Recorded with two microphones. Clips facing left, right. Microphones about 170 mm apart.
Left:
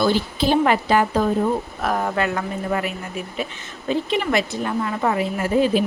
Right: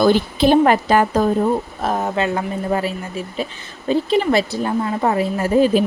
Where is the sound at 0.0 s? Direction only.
55° right (ahead or behind).